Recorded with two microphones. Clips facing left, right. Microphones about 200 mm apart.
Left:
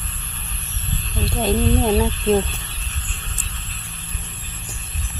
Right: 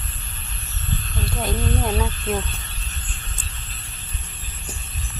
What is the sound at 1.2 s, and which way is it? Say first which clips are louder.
Speech: left 7 dB; 25° left (ahead or behind).